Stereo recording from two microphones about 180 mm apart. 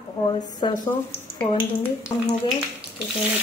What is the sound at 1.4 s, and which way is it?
Speech, 25° left (ahead or behind).